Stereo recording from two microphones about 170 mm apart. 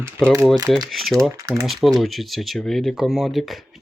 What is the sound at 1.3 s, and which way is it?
Speech, 20° right (ahead or behind).